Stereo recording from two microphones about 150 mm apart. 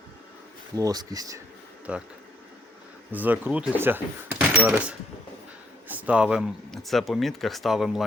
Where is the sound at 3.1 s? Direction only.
10° right (ahead or behind).